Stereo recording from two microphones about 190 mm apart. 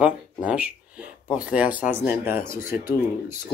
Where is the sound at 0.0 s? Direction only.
5° right (ahead or behind).